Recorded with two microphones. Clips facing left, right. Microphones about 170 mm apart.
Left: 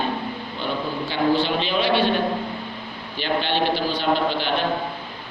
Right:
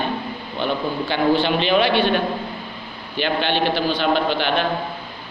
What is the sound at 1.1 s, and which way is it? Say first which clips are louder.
Speech: right 2 dB; 65° right (ahead or behind).